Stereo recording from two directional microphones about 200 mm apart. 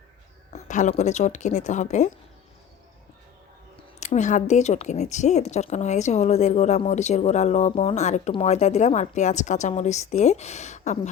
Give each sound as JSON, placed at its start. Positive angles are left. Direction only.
{"t": 0.5, "sound": "speech", "side_deg": 35}
{"t": 4.0, "sound": "speech", "side_deg": 35}